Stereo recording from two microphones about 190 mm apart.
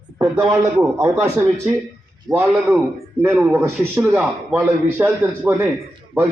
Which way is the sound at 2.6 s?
10° right (ahead or behind).